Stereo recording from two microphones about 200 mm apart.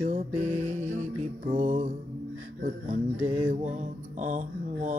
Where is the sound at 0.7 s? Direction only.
40° right (ahead or behind).